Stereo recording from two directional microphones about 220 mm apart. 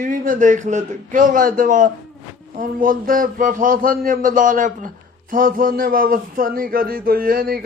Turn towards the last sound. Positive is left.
turn(degrees=-40)  # may be behind; listen again after turning